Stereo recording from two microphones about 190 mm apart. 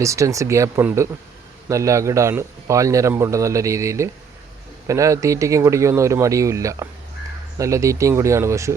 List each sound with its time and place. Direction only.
0.0 s a man's voice: 15° right (ahead or behind)